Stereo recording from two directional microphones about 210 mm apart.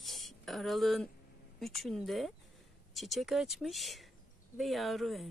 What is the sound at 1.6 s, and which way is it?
Speech, centre (ahead or behind).